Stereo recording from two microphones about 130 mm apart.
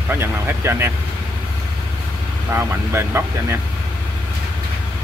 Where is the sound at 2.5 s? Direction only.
20° right (ahead or behind).